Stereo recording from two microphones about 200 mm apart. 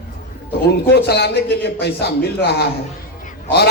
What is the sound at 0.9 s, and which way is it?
A man's voice, 55° left (ahead or behind).